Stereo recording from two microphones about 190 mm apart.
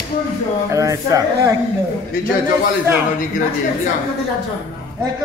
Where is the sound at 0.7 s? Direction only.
15° right (ahead or behind).